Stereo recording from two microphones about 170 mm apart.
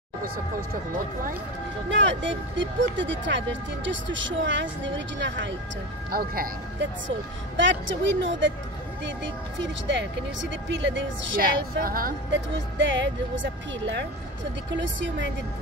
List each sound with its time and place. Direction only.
1.9 s speech: 90° right
6.1 s speech: 60° right (ahead or behind); by 11.1 s 90° right
11.4 s speech: 60° right (ahead or behind); by 15.3 s 90° right